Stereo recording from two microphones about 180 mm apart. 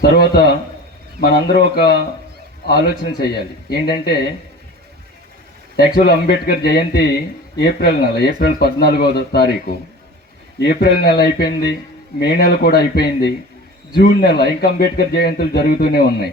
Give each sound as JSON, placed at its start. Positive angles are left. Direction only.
{"t": 0.0, "sound": "speech", "side_deg": 60}
{"t": 6.1, "sound": "speech", "side_deg": 60}
{"t": 10.6, "sound": "speech", "side_deg": 70}